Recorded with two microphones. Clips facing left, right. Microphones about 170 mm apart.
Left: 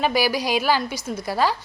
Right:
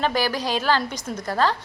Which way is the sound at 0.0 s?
10° left (ahead or behind).